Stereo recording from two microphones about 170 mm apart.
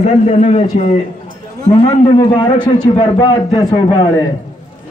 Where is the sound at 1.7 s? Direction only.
30° left (ahead or behind).